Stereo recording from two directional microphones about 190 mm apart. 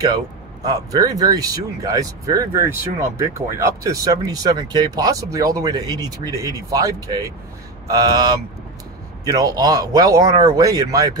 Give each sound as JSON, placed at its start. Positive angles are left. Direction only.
{"t": 0.7, "sound": "speech", "side_deg": -20}